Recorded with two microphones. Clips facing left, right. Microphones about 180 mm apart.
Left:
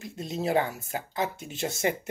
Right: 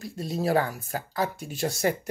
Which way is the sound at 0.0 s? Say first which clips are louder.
Right 2 dB; 20° left (ahead or behind).